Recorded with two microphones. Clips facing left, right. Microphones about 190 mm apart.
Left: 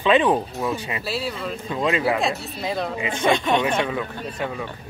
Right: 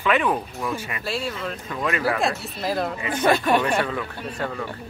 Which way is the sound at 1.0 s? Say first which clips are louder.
Right 1 dB; centre (ahead or behind).